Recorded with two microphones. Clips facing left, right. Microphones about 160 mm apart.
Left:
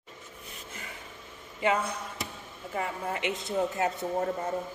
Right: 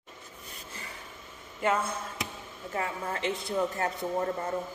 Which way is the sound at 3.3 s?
25° left (ahead or behind).